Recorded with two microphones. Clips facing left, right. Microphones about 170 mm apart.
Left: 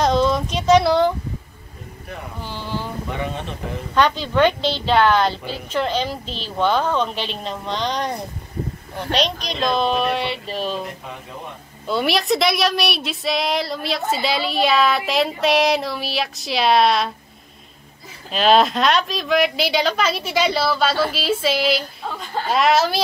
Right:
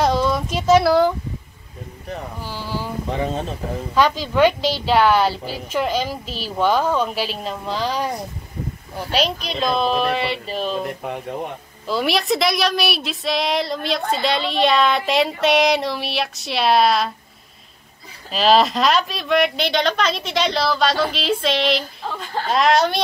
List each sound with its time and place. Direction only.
0.0 s child singing: 10° right (ahead or behind)
2.4 s a sound: 5° right (ahead or behind)
3.1 s speech: 35° right (ahead or behind)
3.9 s a woman's voice: 10° right (ahead or behind)
9.5 s a woman's voice: centre (ahead or behind)
11.9 s a woman's voice: centre (ahead or behind)
18.3 s a woman's voice: centre (ahead or behind)